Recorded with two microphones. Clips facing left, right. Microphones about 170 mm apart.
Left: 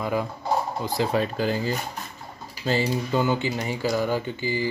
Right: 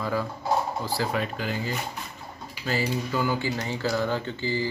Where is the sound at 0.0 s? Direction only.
20° left (ahead or behind).